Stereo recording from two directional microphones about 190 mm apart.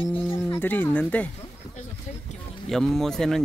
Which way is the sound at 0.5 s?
10° left (ahead or behind).